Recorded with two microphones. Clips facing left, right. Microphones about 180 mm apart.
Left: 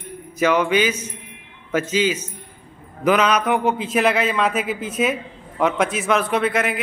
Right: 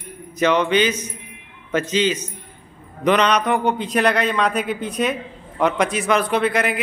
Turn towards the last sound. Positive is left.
turn(degrees=0)  # may be behind; listen again after turning